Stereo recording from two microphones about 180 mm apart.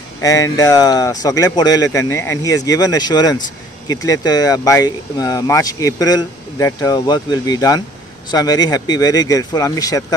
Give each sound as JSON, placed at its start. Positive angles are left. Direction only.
{"t": 0.2, "sound": "speech", "side_deg": 20}